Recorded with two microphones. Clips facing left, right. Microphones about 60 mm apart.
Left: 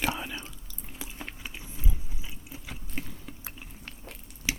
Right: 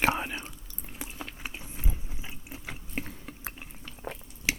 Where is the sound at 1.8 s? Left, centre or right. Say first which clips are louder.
Even; right.